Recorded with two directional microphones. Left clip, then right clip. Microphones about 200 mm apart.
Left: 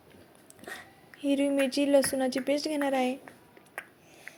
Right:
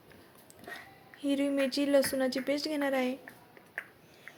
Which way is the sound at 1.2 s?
10° left (ahead or behind).